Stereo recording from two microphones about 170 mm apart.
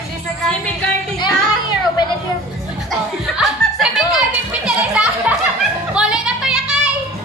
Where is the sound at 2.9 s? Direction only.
Centre (ahead or behind).